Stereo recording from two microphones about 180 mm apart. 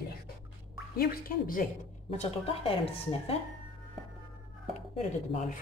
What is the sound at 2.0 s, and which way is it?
A woman's voice, 35° left (ahead or behind).